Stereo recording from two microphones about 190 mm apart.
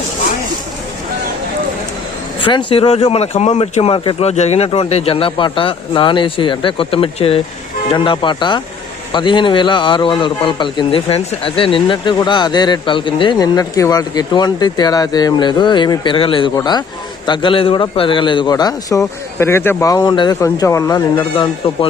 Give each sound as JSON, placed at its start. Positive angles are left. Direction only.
{"t": 2.4, "sound": "a man's voice", "side_deg": 25}